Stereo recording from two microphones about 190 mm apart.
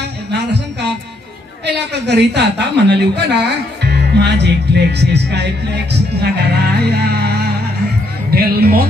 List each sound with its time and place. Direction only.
0.3 s music: 65° right (ahead or behind)
1.7 s a woman's voice: 65° right (ahead or behind)